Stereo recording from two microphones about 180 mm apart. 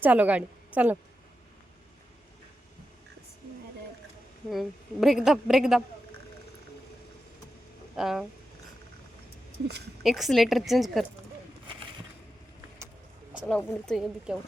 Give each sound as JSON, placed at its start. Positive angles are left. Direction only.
{"t": 0.0, "sound": "a woman's voice", "side_deg": -10}
{"t": 4.5, "sound": "a woman's voice", "side_deg": 0}
{"t": 7.9, "sound": "a woman's voice", "side_deg": 0}
{"t": 10.0, "sound": "a woman's voice", "side_deg": 0}
{"t": 13.5, "sound": "a woman's voice", "side_deg": 5}